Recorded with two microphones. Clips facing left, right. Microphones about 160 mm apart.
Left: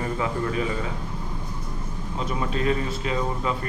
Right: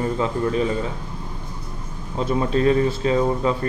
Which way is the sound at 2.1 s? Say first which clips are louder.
Right 7 dB; 35° right (ahead or behind).